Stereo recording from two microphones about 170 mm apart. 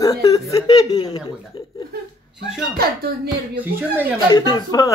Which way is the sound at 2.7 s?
65° right (ahead or behind).